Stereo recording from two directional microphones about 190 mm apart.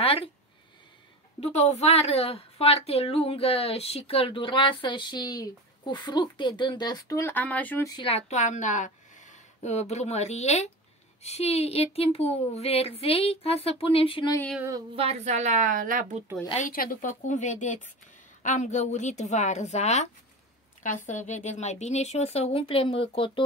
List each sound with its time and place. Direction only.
0.0 s a sound: 30° left (ahead or behind)
1.4 s a woman's voice: 35° left (ahead or behind); by 7.9 s 10° left (ahead or behind)
7.9 s a woman's voice: 30° left (ahead or behind)
15.0 s a woman's voice: 35° right (ahead or behind)
16.4 s speech: 40° left (ahead or behind)